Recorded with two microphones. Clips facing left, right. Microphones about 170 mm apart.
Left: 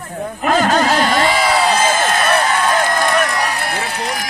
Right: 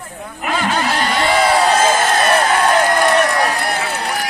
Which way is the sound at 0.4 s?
40° left (ahead or behind).